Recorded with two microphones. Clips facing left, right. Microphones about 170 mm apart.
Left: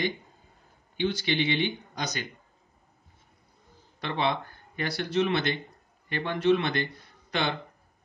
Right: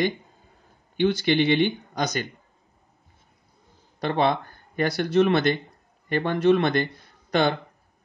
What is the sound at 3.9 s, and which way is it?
Speech, 45° right (ahead or behind).